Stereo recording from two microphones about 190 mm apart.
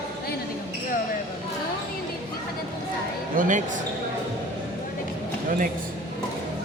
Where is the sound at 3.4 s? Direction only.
45° right (ahead or behind).